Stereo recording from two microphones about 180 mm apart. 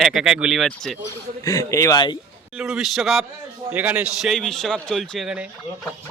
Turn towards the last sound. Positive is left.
turn(degrees=0)  # may be behind; listen again after turning